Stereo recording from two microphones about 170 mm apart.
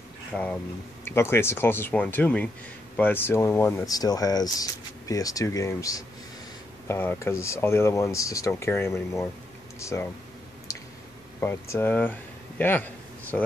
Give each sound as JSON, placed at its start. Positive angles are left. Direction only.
{"t": 0.3, "sound": "speech", "side_deg": 5}
{"t": 10.7, "sound": "a sound", "side_deg": 15}
{"t": 11.4, "sound": "speech", "side_deg": 15}